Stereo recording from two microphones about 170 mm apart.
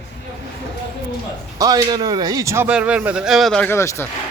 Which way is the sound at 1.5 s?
25° right (ahead or behind).